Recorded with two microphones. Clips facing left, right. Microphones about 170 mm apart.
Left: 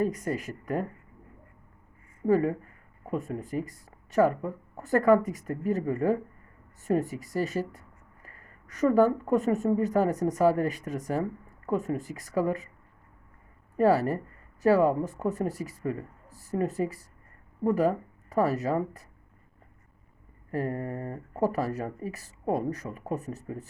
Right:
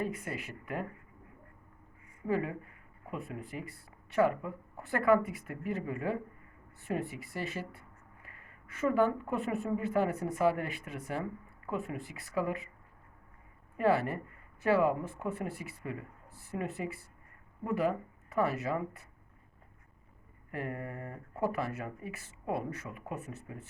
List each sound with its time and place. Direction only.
0.0 s speech: 40° left (ahead or behind)
2.2 s speech: 40° left (ahead or behind)
13.7 s speech: 40° left (ahead or behind)
20.5 s speech: 35° left (ahead or behind)